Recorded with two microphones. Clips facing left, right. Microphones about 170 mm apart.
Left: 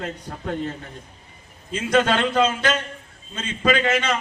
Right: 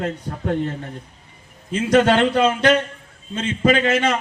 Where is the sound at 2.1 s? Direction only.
55° right (ahead or behind).